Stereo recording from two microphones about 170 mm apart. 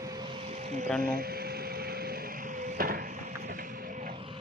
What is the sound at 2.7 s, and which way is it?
Wood, 60° right (ahead or behind).